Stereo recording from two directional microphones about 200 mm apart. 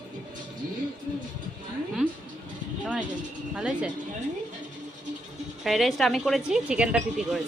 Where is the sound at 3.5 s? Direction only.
5° right (ahead or behind).